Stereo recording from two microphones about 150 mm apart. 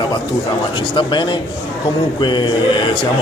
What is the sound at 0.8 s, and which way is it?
Speech, 35° left (ahead or behind).